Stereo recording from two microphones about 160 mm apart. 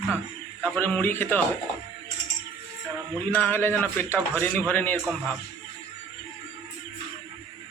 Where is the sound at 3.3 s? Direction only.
10° left (ahead or behind).